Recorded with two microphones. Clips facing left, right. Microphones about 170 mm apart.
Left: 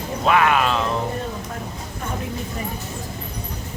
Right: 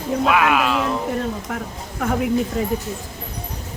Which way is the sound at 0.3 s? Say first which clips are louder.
Left 2 dB; 5° right (ahead or behind).